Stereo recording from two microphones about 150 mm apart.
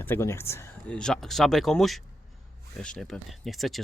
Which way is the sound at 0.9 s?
5° left (ahead or behind).